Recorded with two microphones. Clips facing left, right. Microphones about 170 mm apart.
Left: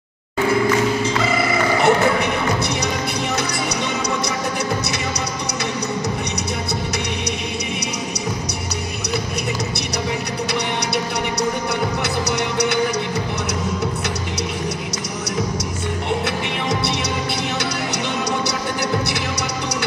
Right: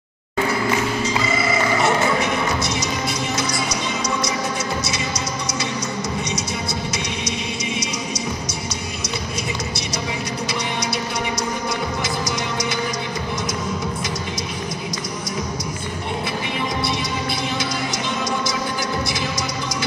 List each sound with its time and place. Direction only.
1.8 s music: 60° left (ahead or behind)
12.0 s music: 65° left (ahead or behind)